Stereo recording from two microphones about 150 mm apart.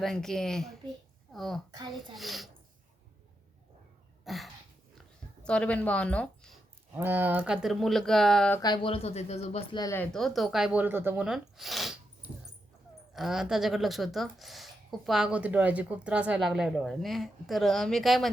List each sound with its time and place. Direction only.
0.0 s a woman's voice: 5° left (ahead or behind)
1.7 s a child's voice: 30° right (ahead or behind)
2.1 s speech: centre (ahead or behind)
4.3 s a sound: centre (ahead or behind)
5.4 s a woman's voice: 5° left (ahead or behind)
6.9 s speech: 15° right (ahead or behind); by 8.5 s 5° left (ahead or behind)
8.6 s speech: 30° left (ahead or behind)
9.7 s speech: 25° left (ahead or behind)
10.0 s speech: 5° left (ahead or behind); by 11.3 s 15° right (ahead or behind)
11.3 s speech: centre (ahead or behind)
13.1 s speech: 5° right (ahead or behind)